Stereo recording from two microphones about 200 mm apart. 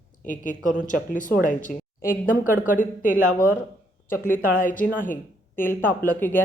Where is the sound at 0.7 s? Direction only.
40° left (ahead or behind).